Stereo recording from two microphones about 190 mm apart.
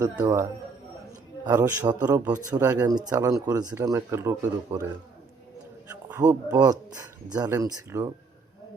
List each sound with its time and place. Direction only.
0.0 s speech: 20° right (ahead or behind)
1.5 s speech: 10° right (ahead or behind)
6.1 s speech: 10° right (ahead or behind)
7.3 s speech: 20° right (ahead or behind)